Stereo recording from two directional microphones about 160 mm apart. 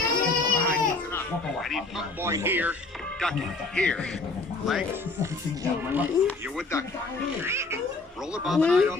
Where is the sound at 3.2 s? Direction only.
5° left (ahead or behind).